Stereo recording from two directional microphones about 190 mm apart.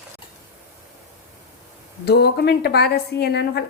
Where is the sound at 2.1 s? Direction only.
60° left (ahead or behind).